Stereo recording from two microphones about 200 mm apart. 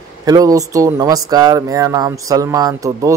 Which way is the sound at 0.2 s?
15° right (ahead or behind).